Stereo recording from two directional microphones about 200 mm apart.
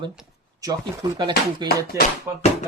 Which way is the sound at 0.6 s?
15° right (ahead or behind).